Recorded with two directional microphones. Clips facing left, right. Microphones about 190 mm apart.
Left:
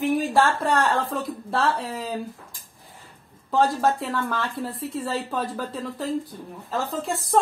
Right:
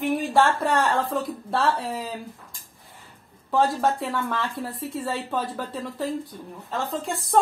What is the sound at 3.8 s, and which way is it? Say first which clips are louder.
A woman's voice: left 1 dB; centre (ahead or behind).